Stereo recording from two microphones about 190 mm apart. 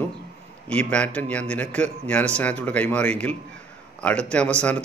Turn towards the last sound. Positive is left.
turn(degrees=5)  # may be behind; listen again after turning